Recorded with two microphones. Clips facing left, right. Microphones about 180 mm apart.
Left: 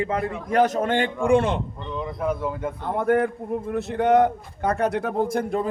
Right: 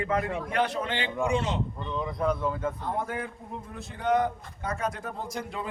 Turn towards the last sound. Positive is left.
turn(degrees=50)  # may be behind; listen again after turning